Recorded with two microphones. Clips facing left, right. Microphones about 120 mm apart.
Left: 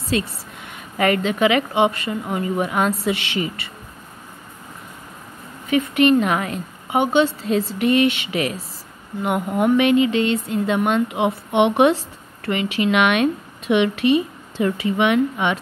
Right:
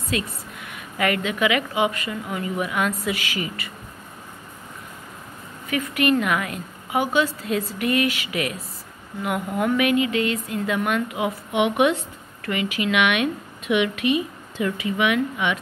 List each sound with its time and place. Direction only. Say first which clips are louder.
0.1 s a woman's voice: left 5 dB; 30° left (ahead or behind)
5.7 s a woman's voice: left 5 dB; 25° left (ahead or behind)